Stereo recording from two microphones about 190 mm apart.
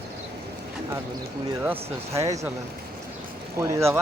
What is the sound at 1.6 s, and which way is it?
Speech, 10° right (ahead or behind).